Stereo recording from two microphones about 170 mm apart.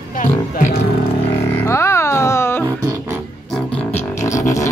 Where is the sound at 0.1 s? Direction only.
50° left (ahead or behind).